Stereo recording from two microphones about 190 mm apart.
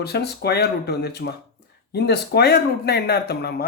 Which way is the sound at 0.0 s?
60° left (ahead or behind).